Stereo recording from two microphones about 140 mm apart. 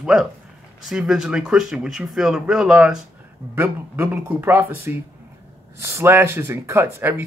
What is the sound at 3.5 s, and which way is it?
Speech, 15° right (ahead or behind).